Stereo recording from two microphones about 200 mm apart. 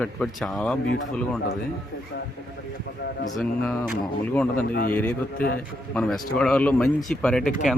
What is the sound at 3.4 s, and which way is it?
A man's voice, centre (ahead or behind).